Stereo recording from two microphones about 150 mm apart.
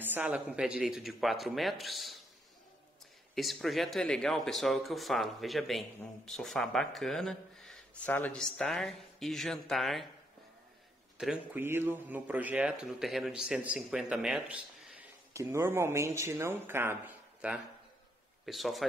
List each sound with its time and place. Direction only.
0.0 s speech: 10° right (ahead or behind)
3.3 s speech: centre (ahead or behind)
11.1 s speech: 5° right (ahead or behind)
11.6 s a man's voice: 15° right (ahead or behind)